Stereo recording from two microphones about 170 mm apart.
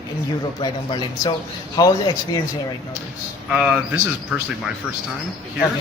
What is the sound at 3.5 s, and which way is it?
Speech, 5° right (ahead or behind).